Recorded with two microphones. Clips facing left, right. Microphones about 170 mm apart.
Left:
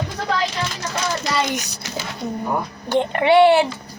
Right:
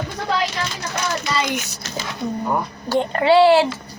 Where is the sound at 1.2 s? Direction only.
70° left (ahead or behind).